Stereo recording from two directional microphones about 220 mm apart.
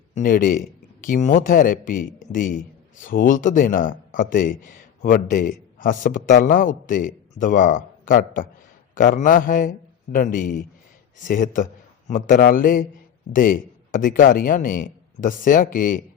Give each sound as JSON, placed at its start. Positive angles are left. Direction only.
{"t": 0.1, "sound": "speech", "side_deg": 40}